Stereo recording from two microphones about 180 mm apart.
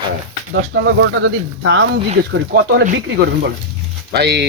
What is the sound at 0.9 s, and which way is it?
Speech, 90° right.